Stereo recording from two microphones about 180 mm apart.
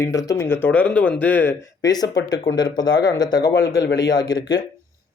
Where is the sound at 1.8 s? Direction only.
20° left (ahead or behind).